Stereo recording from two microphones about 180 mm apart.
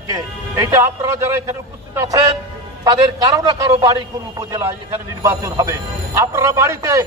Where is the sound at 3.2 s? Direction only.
20° right (ahead or behind).